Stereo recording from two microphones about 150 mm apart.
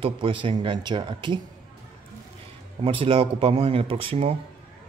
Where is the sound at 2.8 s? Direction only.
35° right (ahead or behind).